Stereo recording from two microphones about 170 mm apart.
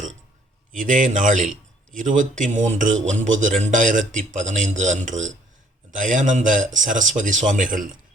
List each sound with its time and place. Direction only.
0.7 s a man's voice: 50° right (ahead or behind)